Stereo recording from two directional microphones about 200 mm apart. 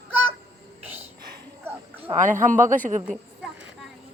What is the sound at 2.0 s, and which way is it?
Speech, 40° right (ahead or behind).